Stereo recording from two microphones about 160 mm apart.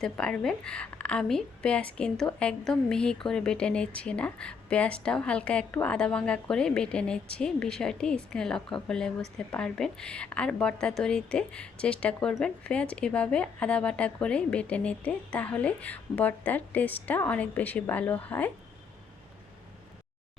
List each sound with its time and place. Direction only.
0.0 s a woman's voice: 5° left (ahead or behind)